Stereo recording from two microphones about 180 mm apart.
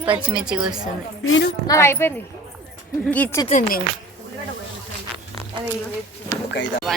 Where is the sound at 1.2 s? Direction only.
90° left.